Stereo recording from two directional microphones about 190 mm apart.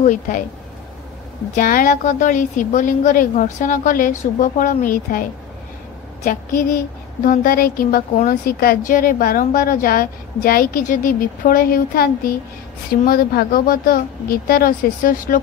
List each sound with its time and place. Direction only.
0.0 s speech: 40° left (ahead or behind)
1.5 s a woman's voice: 45° left (ahead or behind)
6.2 s a woman's voice: 50° left (ahead or behind)